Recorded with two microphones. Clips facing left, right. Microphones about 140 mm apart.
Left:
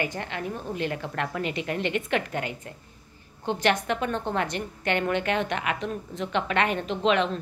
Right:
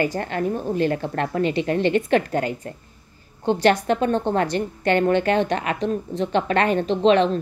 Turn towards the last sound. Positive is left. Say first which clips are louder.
# right 7 dB
turn(degrees=-35)  # may be behind; listen again after turning